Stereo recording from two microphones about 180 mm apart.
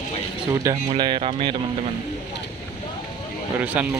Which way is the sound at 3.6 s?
10° right (ahead or behind).